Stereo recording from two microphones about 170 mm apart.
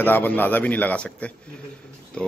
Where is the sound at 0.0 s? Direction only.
10° left (ahead or behind).